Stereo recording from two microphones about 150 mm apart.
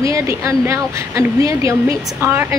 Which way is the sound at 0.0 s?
20° right (ahead or behind).